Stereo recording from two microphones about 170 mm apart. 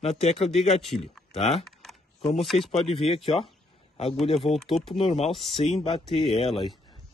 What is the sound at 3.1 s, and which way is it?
Speech, centre (ahead or behind).